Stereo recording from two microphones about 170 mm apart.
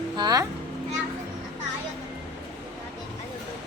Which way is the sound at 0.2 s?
25° right (ahead or behind).